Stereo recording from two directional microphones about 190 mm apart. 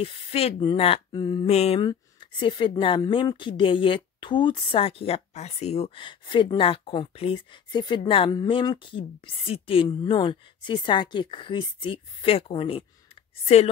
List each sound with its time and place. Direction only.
0.0 s a woman's voice: 30° left (ahead or behind)
1.5 s mantra: 35° left (ahead or behind)
1.8 s a woman's voice: 25° left (ahead or behind)